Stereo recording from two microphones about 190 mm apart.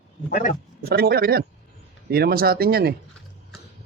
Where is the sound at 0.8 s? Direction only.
55° right (ahead or behind).